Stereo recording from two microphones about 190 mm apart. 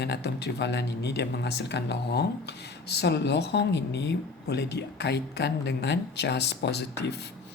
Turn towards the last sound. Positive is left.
turn(degrees=60)  # may be behind; listen again after turning